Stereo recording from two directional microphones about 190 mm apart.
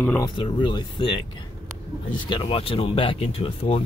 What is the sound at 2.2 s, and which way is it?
Speech, 25° left (ahead or behind).